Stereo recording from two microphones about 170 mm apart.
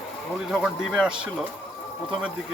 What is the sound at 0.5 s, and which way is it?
Speech, 5° right (ahead or behind).